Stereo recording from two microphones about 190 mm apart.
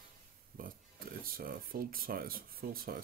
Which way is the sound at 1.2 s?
50° right (ahead or behind).